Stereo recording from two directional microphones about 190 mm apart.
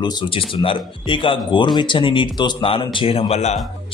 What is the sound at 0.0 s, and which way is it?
Speech, 25° left (ahead or behind).